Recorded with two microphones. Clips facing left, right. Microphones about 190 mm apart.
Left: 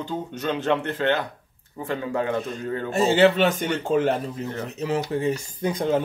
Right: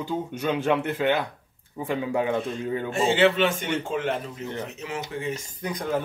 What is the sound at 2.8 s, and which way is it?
A man's voice, 40° left (ahead or behind).